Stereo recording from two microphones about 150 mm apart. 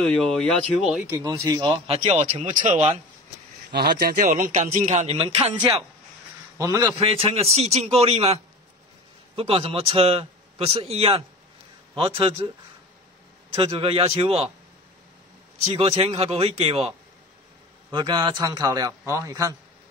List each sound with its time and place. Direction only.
0.0 s speech: 5° left (ahead or behind)
1.1 s a man's voice: 20° right (ahead or behind)
1.9 s a man's voice: 40° right (ahead or behind)
3.7 s a man's voice: 80° right; by 5.2 s 45° right (ahead or behind)
5.2 s a man's voice: 35° right (ahead or behind)
6.6 s a man's voice: 20° right (ahead or behind)
7.0 s a man's voice: 40° right (ahead or behind)
13.6 s a man's voice: 35° right (ahead or behind)
15.7 s a man's voice: 40° right (ahead or behind)
17.9 s a man's voice: 30° right (ahead or behind)